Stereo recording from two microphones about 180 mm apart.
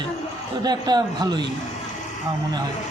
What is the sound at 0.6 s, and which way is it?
Speech, 25° right (ahead or behind).